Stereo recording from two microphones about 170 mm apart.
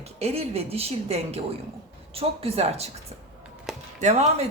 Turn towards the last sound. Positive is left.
turn(degrees=-40)  # may be behind; listen again after turning